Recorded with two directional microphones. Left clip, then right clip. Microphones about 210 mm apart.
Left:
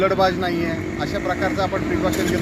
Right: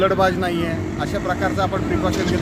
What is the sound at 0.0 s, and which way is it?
Speech, 10° right (ahead or behind).